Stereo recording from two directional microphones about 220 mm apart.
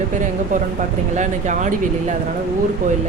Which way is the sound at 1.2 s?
35° right (ahead or behind).